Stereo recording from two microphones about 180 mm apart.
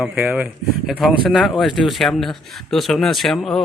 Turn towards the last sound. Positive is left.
turn(degrees=0)  # may be behind; listen again after turning